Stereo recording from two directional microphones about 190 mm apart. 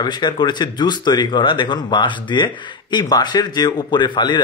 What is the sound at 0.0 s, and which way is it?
Speech, 20° left (ahead or behind).